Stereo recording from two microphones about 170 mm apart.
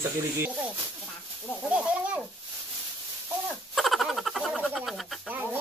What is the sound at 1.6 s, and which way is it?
Speech, 5° right (ahead or behind).